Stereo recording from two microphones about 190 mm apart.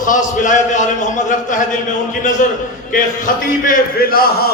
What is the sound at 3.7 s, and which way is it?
Speech, 50° left (ahead or behind).